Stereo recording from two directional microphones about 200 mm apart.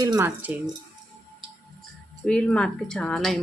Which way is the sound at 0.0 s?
15° right (ahead or behind).